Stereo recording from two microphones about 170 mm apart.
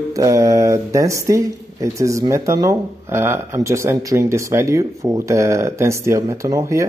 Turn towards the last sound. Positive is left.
turn(degrees=-20)  # may be behind; listen again after turning